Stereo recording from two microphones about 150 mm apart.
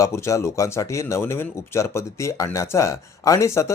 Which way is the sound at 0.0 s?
20° left (ahead or behind).